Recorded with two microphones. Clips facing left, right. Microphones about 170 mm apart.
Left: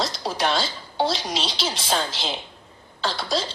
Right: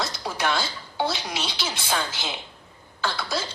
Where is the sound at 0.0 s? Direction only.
30° left (ahead or behind).